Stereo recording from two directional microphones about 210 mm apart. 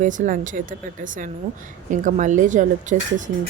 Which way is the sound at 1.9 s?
35° right (ahead or behind).